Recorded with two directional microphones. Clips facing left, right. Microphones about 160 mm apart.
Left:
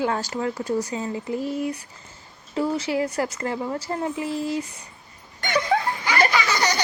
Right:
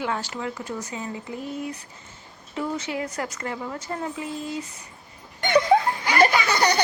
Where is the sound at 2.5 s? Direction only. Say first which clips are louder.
Left 5 dB; 30° left (ahead or behind).